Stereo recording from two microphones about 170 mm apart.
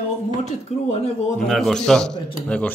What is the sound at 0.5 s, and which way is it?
Speech, 40° left (ahead or behind).